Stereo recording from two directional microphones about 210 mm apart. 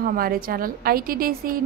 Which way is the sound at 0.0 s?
45° right (ahead or behind).